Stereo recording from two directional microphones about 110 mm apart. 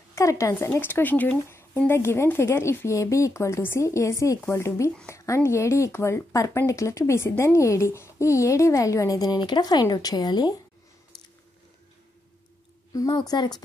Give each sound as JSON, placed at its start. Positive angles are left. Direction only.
{"t": 0.1, "sound": "speech", "side_deg": 30}
{"t": 12.9, "sound": "a woman's voice", "side_deg": 35}